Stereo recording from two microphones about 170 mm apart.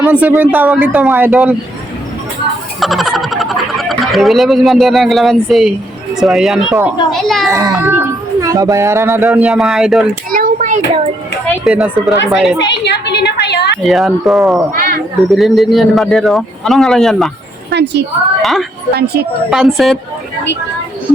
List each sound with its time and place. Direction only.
0.0 s speech: 10° right (ahead or behind)
2.8 s speech: centre (ahead or behind)
7.4 s speech: 20° right (ahead or behind); by 10.0 s centre (ahead or behind)
10.3 s a child's voice: 50° right (ahead or behind)
11.6 s speech: centre (ahead or behind)
12.5 s a woman's voice: 90° left
13.8 s speech: centre (ahead or behind)
14.7 s speech: 55° right (ahead or behind)
15.4 s speech: centre (ahead or behind)
17.7 s a woman's voice: 85° right
18.9 s speech: 70° right (ahead or behind)
19.5 s speech: centre (ahead or behind)